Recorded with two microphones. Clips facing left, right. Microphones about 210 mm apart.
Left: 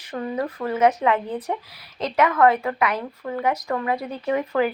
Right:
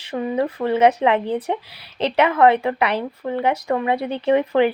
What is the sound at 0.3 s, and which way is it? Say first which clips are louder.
A woman's voice: right 5 dB; 25° right (ahead or behind).